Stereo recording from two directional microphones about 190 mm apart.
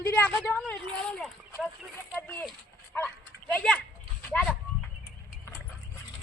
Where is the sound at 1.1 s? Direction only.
5° left (ahead or behind).